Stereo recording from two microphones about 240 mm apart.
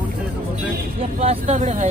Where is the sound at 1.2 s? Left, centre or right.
Right.